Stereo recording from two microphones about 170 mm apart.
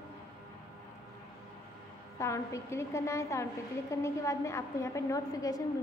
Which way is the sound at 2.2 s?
15° left (ahead or behind).